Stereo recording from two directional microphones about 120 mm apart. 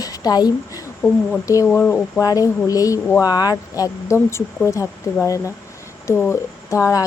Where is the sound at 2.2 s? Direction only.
30° left (ahead or behind).